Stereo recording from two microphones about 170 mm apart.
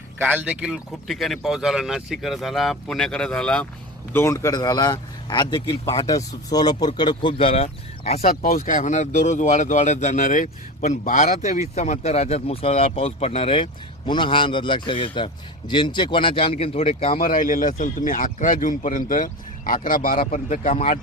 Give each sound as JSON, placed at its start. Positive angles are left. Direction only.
{"t": 0.2, "sound": "a man's voice", "side_deg": -10}
{"t": 8.4, "sound": "a man's voice", "side_deg": 55}
{"t": 17.2, "sound": "speech", "side_deg": 55}
{"t": 20.3, "sound": "speech", "side_deg": 45}